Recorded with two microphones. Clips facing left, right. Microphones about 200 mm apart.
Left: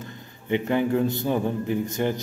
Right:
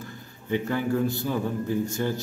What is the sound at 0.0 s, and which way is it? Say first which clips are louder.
A man's voice: left 1 dB; 20° left (ahead or behind).